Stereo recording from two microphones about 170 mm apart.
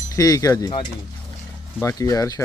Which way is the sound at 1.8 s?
20° left (ahead or behind).